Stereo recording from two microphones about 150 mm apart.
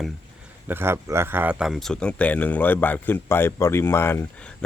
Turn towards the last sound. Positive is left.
turn(degrees=15)  # may be behind; listen again after turning